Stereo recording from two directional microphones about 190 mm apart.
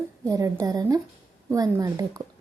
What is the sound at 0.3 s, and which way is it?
A woman's voice, 20° right (ahead or behind).